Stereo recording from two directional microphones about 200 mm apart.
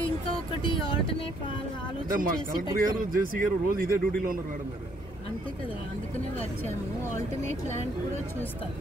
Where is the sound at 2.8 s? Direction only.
45° right (ahead or behind).